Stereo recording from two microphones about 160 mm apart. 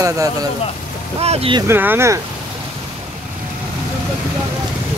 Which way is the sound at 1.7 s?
15° right (ahead or behind).